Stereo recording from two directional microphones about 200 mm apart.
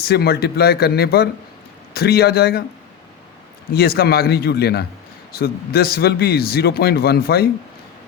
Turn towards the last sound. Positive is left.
turn(degrees=50)  # may be behind; listen again after turning